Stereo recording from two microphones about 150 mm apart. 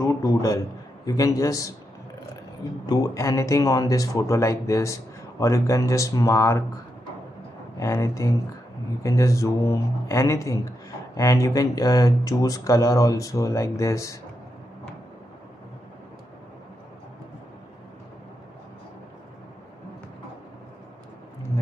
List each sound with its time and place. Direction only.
0.0 s a man's voice: 20° left (ahead or behind)
2.9 s speech: 20° left (ahead or behind)
7.7 s speech: 20° left (ahead or behind)